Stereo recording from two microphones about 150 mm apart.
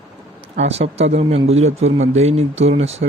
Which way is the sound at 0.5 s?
45° right (ahead or behind).